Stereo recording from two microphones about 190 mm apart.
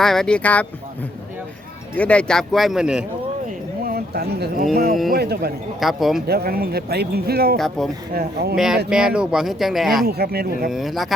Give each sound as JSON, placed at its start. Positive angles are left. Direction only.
{"t": 0.0, "sound": "speech", "side_deg": 0}
{"t": 2.0, "sound": "speech", "side_deg": 5}
{"t": 3.8, "sound": "speech", "side_deg": -55}
{"t": 5.8, "sound": "speech", "side_deg": 0}
{"t": 6.2, "sound": "speech", "side_deg": -55}
{"t": 8.5, "sound": "speech", "side_deg": -5}
{"t": 10.1, "sound": "speech", "side_deg": -55}
{"t": 10.7, "sound": "speech", "side_deg": 0}